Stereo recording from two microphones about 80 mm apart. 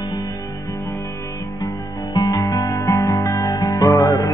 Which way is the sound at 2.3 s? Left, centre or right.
Left.